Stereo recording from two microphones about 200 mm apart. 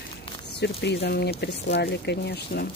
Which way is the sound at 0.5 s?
60° left (ahead or behind).